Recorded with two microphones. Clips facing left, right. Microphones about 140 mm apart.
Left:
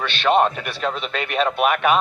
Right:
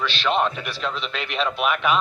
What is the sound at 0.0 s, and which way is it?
A man's voice, 55° left (ahead or behind).